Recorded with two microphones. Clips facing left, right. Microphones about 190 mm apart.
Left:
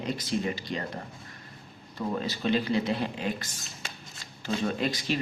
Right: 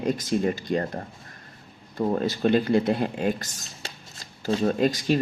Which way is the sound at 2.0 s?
50° right (ahead or behind).